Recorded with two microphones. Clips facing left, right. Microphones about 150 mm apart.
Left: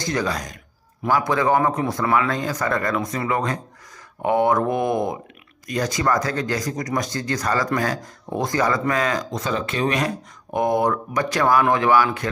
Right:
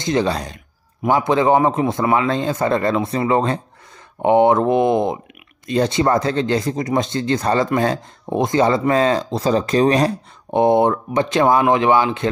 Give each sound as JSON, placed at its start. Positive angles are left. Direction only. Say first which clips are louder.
{"t": 0.0, "sound": "speech", "louder": "right 5 dB", "side_deg": -25}